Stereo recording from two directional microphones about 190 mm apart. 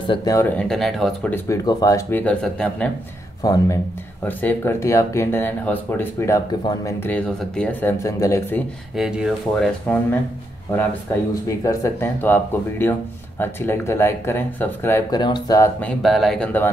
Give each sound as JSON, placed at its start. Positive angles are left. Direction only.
{"t": 0.0, "sound": "speech", "side_deg": 25}
{"t": 1.3, "sound": "speech", "side_deg": 15}
{"t": 3.4, "sound": "speech", "side_deg": 20}
{"t": 8.9, "sound": "speech", "side_deg": 0}
{"t": 11.4, "sound": "speech", "side_deg": 15}